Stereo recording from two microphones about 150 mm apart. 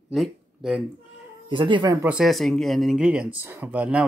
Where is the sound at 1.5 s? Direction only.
30° right (ahead or behind).